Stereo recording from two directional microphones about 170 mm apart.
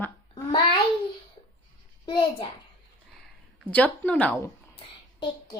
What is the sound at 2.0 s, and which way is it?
Speech, 25° left (ahead or behind).